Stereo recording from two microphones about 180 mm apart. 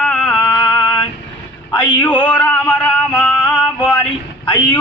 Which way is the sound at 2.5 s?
5° left (ahead or behind).